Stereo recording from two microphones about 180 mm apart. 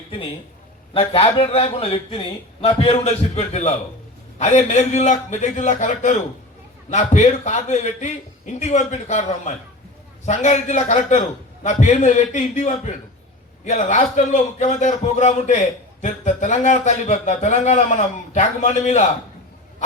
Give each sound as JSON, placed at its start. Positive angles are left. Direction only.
{"t": 0.9, "sound": "a man's voice", "side_deg": 30}